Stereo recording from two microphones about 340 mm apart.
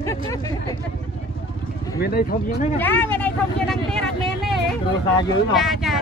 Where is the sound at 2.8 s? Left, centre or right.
Centre.